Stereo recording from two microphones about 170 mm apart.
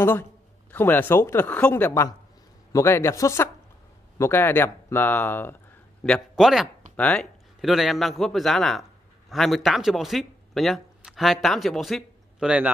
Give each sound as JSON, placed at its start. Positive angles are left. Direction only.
{"t": 0.0, "sound": "speech", "side_deg": 10}
{"t": 6.0, "sound": "a man's voice", "side_deg": 0}